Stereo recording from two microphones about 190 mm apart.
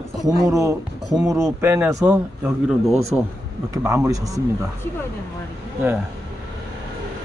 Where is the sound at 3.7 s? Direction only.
15° right (ahead or behind).